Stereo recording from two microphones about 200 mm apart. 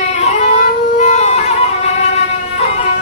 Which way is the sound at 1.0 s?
35° left (ahead or behind).